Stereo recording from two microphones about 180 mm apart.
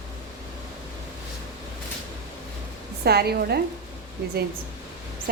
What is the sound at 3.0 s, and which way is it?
Speech, 60° right (ahead or behind).